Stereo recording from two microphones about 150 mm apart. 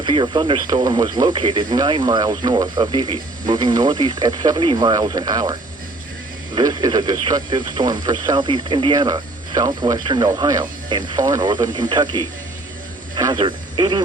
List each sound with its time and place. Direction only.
0.0 s speech: 30° right (ahead or behind)